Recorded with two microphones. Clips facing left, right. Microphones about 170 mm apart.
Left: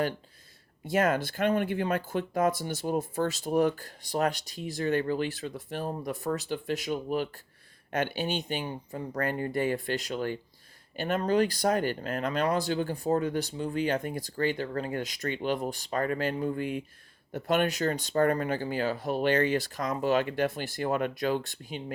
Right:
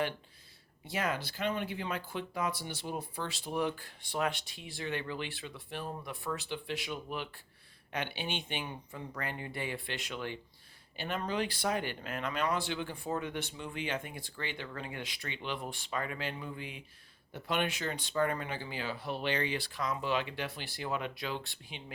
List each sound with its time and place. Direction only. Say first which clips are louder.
0.9 s speech: left 9 dB; 50° left (ahead or behind)